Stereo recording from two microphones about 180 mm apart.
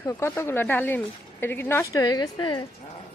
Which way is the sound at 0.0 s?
15° left (ahead or behind).